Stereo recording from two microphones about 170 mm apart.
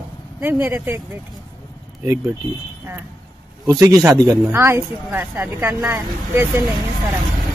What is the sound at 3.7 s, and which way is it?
Speech, 20° right (ahead or behind).